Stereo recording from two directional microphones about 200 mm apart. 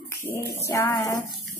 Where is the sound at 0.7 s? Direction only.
15° left (ahead or behind).